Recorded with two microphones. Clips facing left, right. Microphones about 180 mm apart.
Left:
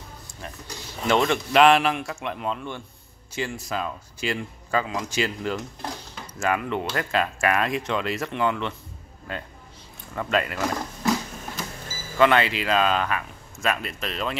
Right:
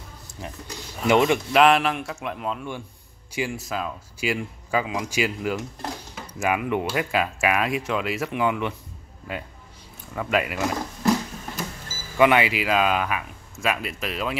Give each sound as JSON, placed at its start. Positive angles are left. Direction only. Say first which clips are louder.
{"t": 0.4, "sound": "speech", "louder": "right 2 dB", "side_deg": -20}
{"t": 1.6, "sound": "a man's voice", "louder": "left 2 dB", "side_deg": 0}
{"t": 12.2, "sound": "speech", "louder": "right 1 dB", "side_deg": -10}